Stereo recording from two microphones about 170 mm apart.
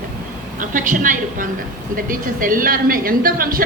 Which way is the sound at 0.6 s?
50° right (ahead or behind).